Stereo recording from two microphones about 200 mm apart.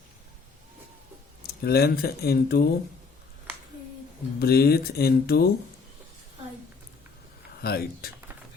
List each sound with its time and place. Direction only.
1.5 s speech: 50° left (ahead or behind)
4.4 s speech: 50° left (ahead or behind)
7.6 s speech: 50° left (ahead or behind)